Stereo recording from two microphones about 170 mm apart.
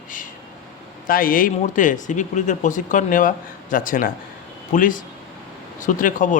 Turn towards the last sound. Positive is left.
turn(degrees=50)  # may be behind; listen again after turning